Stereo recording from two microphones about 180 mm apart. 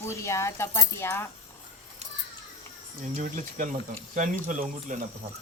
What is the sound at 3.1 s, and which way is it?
Speech, 45° right (ahead or behind).